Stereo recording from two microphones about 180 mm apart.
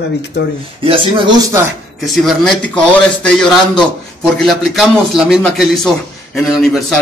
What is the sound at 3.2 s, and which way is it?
A man's voice, 5° left (ahead or behind).